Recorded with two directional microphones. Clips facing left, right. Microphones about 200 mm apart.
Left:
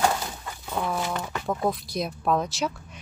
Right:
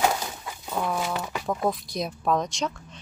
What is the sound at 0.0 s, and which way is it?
Speech, 5° right (ahead or behind).